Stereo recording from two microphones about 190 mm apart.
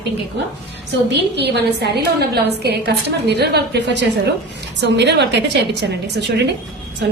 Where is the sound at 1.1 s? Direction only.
60° right (ahead or behind).